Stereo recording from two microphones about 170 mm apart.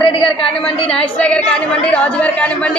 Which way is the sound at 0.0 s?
35° left (ahead or behind).